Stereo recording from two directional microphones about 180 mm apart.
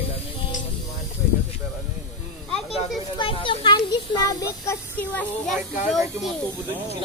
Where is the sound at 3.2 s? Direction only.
30° left (ahead or behind); by 6.3 s centre (ahead or behind).